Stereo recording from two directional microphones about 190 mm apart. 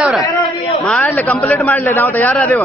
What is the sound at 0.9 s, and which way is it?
A man's voice, 10° left (ahead or behind).